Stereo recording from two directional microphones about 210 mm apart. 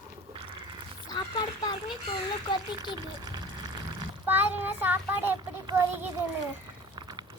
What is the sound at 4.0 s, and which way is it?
Speech, 10° right (ahead or behind).